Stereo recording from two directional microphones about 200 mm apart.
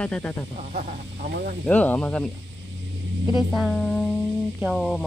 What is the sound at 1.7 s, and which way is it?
Speech, 5° left (ahead or behind).